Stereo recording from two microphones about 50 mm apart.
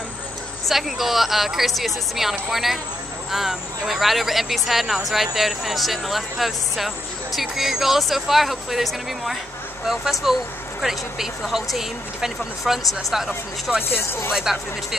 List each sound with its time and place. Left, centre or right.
0.7 s speech: centre
13.8 s speech: left
14.3 s speech: centre